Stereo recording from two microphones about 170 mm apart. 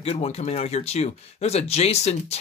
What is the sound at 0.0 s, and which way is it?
Speech, 40° left (ahead or behind).